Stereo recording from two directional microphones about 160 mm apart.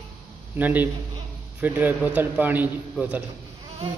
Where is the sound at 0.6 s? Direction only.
10° right (ahead or behind).